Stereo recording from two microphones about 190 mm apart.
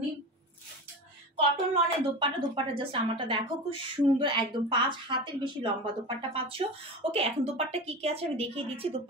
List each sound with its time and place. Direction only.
1.3 s speech: 25° right (ahead or behind)